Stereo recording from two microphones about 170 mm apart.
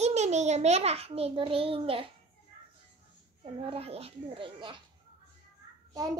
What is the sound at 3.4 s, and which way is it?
A child's voice, 35° right (ahead or behind).